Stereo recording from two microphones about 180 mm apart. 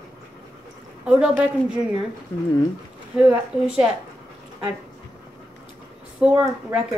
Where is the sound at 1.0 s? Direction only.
5° right (ahead or behind).